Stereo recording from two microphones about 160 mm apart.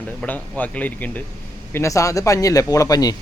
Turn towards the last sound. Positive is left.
turn(degrees=25)  # may be behind; listen again after turning